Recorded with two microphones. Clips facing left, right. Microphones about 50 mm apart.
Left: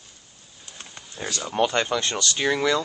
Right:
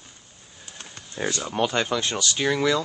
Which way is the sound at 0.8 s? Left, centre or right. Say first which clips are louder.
Even; centre.